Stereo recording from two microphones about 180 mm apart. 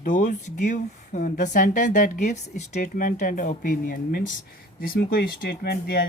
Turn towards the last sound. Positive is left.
turn(degrees=60)  # may be behind; listen again after turning